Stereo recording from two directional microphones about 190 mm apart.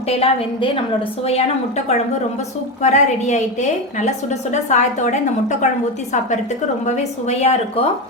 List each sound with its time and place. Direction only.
0.1 s a woman's voice: 30° left (ahead or behind)
6.8 s a woman's voice: 35° left (ahead or behind)